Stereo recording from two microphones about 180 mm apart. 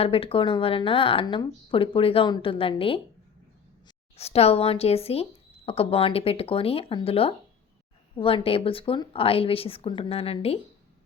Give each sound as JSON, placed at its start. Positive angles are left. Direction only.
{"t": 0.0, "sound": "speech", "side_deg": 30}
{"t": 4.2, "sound": "speech", "side_deg": 35}